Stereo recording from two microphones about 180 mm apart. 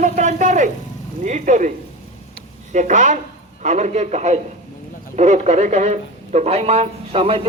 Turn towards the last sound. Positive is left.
turn(degrees=-30)  # may be behind; listen again after turning